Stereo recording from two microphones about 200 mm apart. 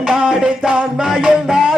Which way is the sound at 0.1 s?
5° right (ahead or behind).